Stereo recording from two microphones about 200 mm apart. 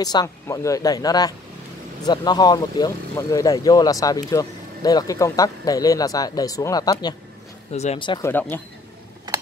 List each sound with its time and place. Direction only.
0.0 s speech: 20° left (ahead or behind)
7.7 s speech: 30° left (ahead or behind)
8.3 s speech: 10° left (ahead or behind)